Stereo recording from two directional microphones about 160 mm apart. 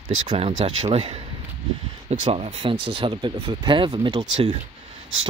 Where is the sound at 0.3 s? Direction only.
30° right (ahead or behind).